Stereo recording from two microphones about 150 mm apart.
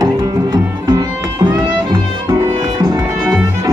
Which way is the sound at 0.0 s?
25° right (ahead or behind).